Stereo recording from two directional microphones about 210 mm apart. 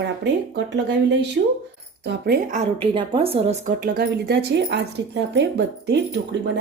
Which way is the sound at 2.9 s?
25° right (ahead or behind).